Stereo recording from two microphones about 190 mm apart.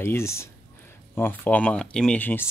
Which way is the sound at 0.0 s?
15° left (ahead or behind).